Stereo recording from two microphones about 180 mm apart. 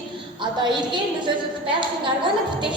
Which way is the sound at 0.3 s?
25° right (ahead or behind).